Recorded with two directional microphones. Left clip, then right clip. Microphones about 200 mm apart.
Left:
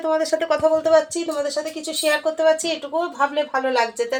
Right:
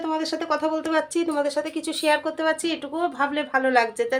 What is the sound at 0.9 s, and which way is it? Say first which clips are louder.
Speech: left 5 dB; 20° right (ahead or behind).